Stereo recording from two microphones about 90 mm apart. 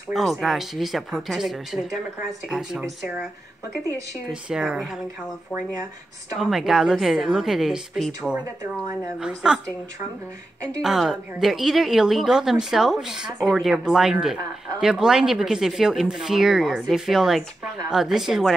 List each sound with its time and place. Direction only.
0.1 s speech: centre (ahead or behind)
4.3 s speech: 10° right (ahead or behind)
6.3 s speech: 5° right (ahead or behind)
9.2 s speech: 5° right (ahead or behind)
10.8 s speech: 5° right (ahead or behind)